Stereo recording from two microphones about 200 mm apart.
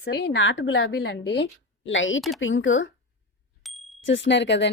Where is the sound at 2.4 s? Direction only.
75° left (ahead or behind).